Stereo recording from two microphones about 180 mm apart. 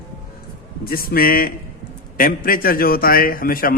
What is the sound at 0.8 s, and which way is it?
A man's voice, 55° left (ahead or behind).